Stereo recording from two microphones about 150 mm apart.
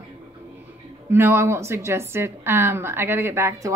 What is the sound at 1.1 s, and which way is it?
A woman's voice, 15° right (ahead or behind).